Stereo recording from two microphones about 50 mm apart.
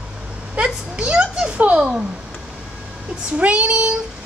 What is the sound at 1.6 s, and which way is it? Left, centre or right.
Child singing, right.